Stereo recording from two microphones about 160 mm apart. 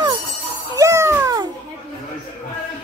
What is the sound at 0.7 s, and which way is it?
Music, 20° right (ahead or behind).